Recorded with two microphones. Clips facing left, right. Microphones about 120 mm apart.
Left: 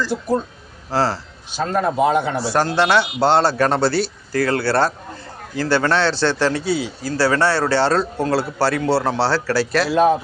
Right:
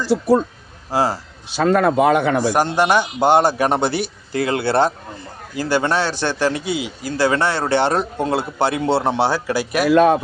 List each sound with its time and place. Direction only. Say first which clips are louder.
0.1 s speech: right 5 dB; 85° right
0.9 s speech: right 1 dB; 15° right (ahead or behind)
1.5 s speech: right 5 dB; 85° right; by 2.5 s 65° right (ahead or behind)
2.5 s a man's voice: left 3 dB; 15° right (ahead or behind)
9.9 s speech: right 3 dB; 70° right (ahead or behind)